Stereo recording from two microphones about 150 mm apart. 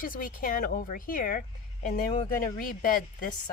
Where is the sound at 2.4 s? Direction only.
75° left (ahead or behind).